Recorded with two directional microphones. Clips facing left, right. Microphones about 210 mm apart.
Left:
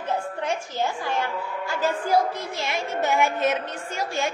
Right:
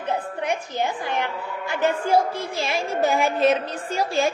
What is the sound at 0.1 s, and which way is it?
A woman's voice, 15° right (ahead or behind).